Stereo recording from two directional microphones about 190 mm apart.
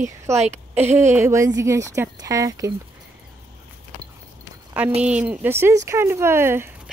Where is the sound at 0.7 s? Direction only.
15° right (ahead or behind).